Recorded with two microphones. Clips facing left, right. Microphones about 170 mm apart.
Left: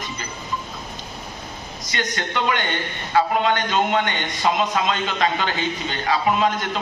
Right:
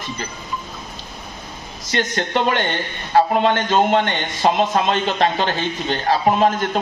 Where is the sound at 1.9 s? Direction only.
45° right (ahead or behind).